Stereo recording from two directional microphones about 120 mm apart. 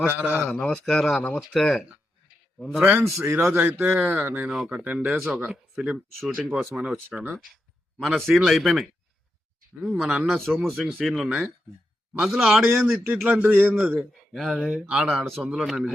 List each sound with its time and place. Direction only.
0.0 s speech: 15° right (ahead or behind)
0.4 s speech: 10° left (ahead or behind)
2.6 s speech: 5° right (ahead or behind)
3.0 s speech: 25° right (ahead or behind)
4.4 s speech: 5° right (ahead or behind)
13.2 s speech: 15° right (ahead or behind)
14.0 s speech: centre (ahead or behind)